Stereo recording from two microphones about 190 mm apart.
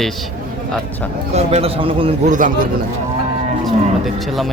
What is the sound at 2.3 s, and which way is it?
Speech, 45° right (ahead or behind).